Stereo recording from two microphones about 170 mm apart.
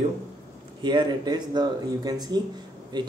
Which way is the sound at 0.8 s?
25° right (ahead or behind).